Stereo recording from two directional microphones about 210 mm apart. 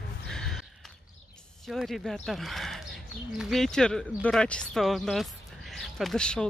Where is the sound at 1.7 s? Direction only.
Centre (ahead or behind).